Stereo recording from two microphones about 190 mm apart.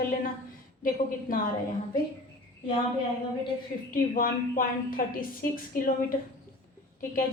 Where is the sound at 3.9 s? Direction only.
50° left (ahead or behind).